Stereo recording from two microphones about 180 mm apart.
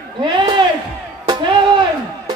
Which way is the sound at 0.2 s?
25° right (ahead or behind).